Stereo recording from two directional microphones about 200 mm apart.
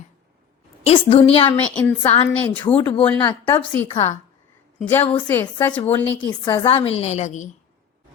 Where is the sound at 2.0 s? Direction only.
30° left (ahead or behind).